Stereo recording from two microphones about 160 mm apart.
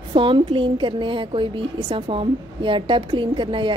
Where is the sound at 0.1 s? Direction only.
35° right (ahead or behind).